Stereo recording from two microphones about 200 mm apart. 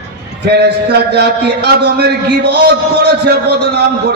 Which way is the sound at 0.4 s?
55° right (ahead or behind).